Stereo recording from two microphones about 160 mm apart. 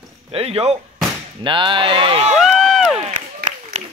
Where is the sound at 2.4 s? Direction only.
5° right (ahead or behind).